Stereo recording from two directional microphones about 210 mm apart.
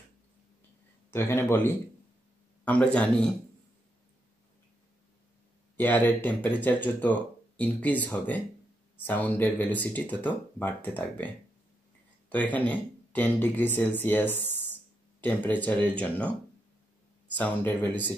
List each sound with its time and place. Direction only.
1.1 s a man's voice: 10° left (ahead or behind)
5.8 s speech: 10° left (ahead or behind)
17.4 s speech: 5° left (ahead or behind)